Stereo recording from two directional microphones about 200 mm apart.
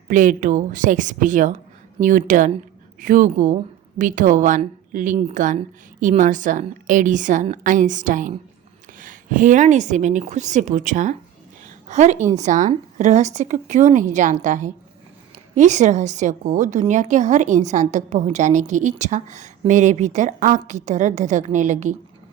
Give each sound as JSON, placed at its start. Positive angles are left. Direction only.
{"t": 0.1, "sound": "a woman's voice", "side_deg": -40}